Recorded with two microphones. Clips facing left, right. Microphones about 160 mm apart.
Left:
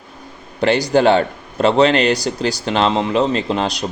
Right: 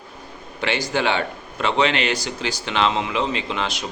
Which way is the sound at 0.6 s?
40° left (ahead or behind).